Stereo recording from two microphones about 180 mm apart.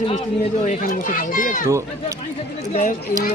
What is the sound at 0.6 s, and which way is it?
A child's voice, 45° left (ahead or behind).